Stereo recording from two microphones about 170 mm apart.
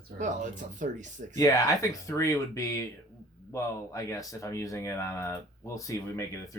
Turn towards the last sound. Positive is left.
turn(degrees=20)  # may be behind; listen again after turning